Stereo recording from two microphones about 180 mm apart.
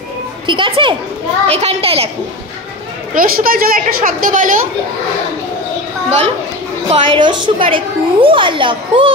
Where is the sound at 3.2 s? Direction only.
55° right (ahead or behind).